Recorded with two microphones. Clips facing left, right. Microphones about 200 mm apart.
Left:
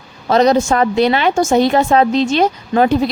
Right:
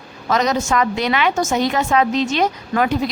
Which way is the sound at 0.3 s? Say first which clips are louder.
Left 7 dB; 30° left (ahead or behind).